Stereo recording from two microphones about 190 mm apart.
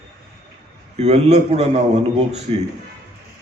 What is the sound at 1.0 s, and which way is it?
Speech, 35° right (ahead or behind).